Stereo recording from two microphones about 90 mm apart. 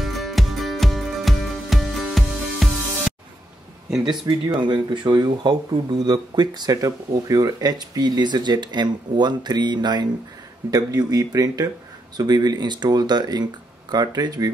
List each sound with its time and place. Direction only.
0.0 s music: centre (ahead or behind)
4.0 s speech: 55° right (ahead or behind)